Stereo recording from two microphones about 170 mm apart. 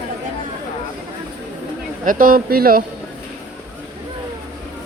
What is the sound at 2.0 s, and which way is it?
Speech, 55° right (ahead or behind).